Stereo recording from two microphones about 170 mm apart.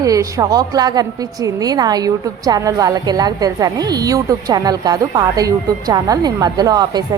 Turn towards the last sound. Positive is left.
turn(degrees=-25)  # may be behind; listen again after turning